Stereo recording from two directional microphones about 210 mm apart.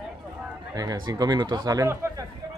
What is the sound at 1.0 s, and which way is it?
Speech, 20° right (ahead or behind).